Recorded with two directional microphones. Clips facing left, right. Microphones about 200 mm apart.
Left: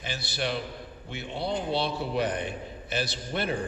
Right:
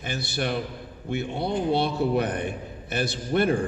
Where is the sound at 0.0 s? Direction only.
55° right (ahead or behind).